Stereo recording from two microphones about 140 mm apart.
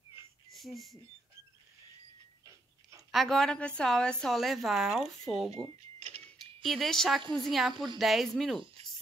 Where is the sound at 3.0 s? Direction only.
Centre (ahead or behind).